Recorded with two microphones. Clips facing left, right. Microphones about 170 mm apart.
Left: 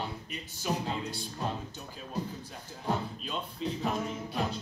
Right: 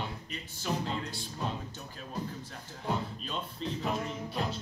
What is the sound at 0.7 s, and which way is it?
Music, 20° left (ahead or behind).